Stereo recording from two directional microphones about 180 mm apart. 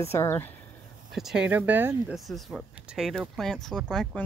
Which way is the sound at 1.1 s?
Centre (ahead or behind).